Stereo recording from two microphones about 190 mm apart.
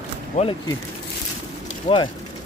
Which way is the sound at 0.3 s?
35° left (ahead or behind).